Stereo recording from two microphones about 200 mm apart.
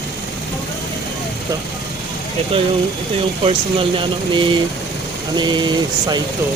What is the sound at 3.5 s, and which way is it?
Speech, 25° right (ahead or behind).